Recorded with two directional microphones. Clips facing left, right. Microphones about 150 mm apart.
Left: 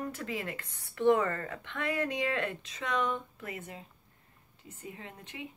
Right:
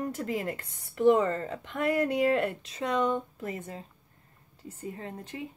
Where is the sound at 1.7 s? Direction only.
35° right (ahead or behind).